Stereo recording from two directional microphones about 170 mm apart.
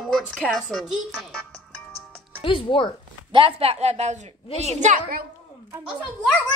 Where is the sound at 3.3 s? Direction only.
30° right (ahead or behind); by 5.2 s 50° right (ahead or behind).